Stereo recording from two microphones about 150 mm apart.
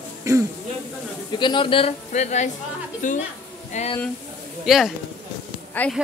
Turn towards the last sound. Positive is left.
turn(degrees=10)  # may be behind; listen again after turning